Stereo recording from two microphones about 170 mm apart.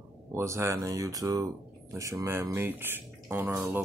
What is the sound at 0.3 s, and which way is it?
Speech, 15° right (ahead or behind).